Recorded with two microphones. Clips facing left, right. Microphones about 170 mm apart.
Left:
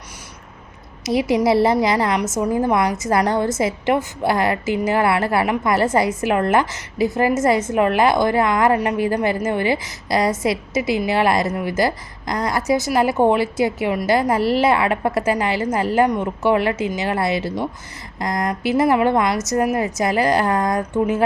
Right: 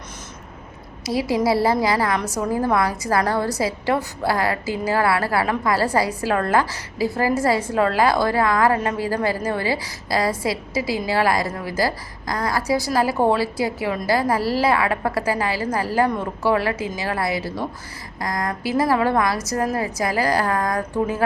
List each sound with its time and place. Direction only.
1.0 s a woman's voice: 20° left (ahead or behind)